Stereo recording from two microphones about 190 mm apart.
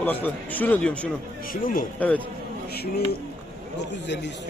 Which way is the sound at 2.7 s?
55° left (ahead or behind).